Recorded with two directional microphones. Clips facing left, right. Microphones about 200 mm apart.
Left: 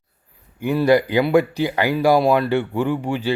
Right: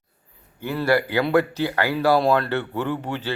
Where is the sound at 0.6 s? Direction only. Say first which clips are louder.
Left 5 dB; 15° left (ahead or behind).